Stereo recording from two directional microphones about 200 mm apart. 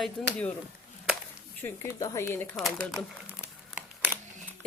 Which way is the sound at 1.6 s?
10° left (ahead or behind).